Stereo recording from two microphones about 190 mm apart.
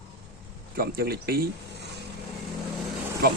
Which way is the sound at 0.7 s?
50° right (ahead or behind).